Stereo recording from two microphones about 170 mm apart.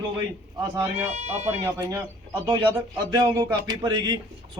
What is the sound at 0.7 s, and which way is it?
Speech, 10° right (ahead or behind).